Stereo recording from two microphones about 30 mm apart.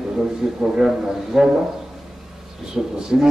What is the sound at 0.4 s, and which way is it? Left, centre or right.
A man's voice, centre.